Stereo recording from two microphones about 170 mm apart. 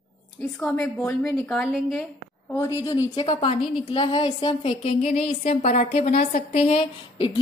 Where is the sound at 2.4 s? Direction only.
15° left (ahead or behind).